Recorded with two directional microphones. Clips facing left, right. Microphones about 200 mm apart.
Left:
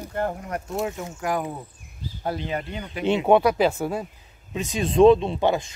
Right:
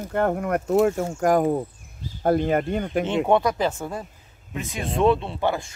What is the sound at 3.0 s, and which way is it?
Speech, 10° left (ahead or behind).